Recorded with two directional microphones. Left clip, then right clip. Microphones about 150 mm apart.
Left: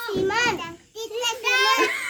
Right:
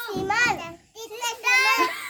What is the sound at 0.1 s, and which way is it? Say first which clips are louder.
Children playing: even; 30° right (ahead or behind).